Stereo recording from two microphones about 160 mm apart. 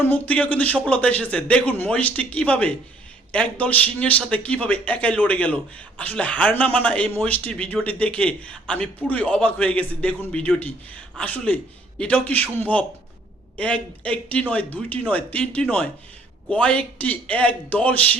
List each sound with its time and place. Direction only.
0.0 s a man's voice: 10° left (ahead or behind)